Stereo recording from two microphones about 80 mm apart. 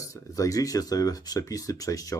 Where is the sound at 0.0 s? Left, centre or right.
Left.